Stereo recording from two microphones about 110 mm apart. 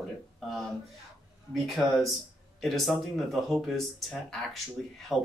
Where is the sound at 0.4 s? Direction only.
Centre (ahead or behind).